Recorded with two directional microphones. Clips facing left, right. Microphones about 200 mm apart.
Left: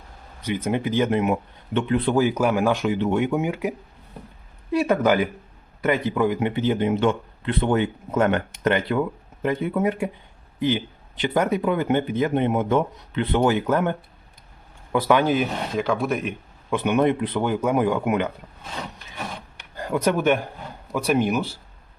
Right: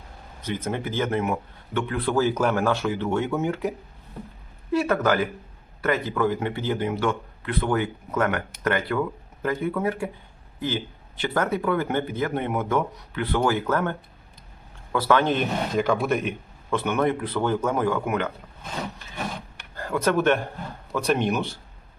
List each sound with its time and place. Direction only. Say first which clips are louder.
0.4 s speech: left 4 dB; 15° left (ahead or behind)
14.9 s speech: left 2 dB; 15° left (ahead or behind)
16.6 s speech: left 3 dB; 15° left (ahead or behind)
19.7 s speech: left 1 dB; 15° left (ahead or behind)